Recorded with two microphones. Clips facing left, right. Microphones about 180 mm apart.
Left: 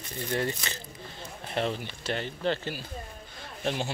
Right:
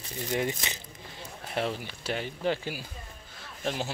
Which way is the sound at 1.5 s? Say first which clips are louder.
Left 1 dB; 5° right (ahead or behind).